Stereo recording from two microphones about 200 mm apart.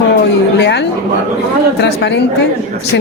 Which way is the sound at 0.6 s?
60° left (ahead or behind).